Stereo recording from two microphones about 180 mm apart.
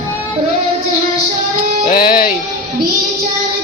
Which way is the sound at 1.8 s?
55° left (ahead or behind).